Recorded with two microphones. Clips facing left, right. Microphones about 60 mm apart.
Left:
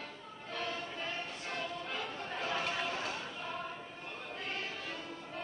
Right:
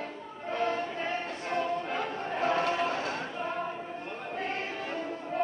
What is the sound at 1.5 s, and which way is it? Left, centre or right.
Music, right.